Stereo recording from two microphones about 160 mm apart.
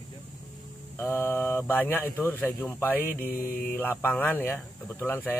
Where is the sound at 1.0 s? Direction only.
15° left (ahead or behind).